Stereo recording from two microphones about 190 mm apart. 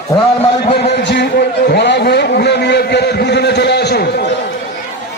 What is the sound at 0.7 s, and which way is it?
Speech, 60° left (ahead or behind).